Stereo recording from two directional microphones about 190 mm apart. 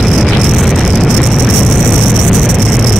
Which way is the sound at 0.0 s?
Centre (ahead or behind).